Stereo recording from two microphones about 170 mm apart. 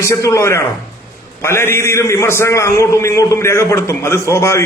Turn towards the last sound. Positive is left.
turn(degrees=15)  # may be behind; listen again after turning